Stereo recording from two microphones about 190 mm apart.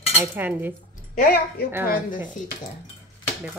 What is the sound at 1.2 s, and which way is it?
Speech, 50° left (ahead or behind).